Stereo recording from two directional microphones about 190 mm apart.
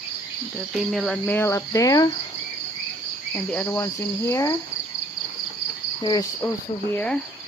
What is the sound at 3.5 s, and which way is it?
Speech, 10° left (ahead or behind).